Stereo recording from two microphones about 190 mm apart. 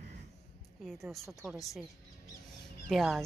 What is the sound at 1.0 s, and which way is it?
Speech, centre (ahead or behind).